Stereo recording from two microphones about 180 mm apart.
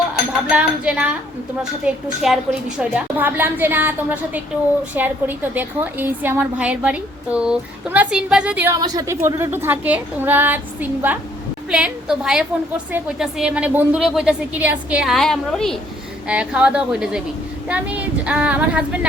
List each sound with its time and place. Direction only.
0.5 s a woman's voice: 5° right (ahead or behind)